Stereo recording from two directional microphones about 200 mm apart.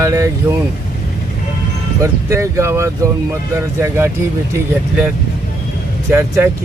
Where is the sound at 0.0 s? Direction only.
15° right (ahead or behind).